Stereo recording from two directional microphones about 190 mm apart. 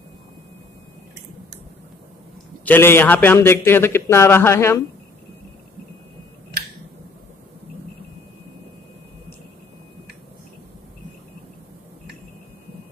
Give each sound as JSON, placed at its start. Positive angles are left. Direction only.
{"t": 2.6, "sound": "a man's voice", "side_deg": 10}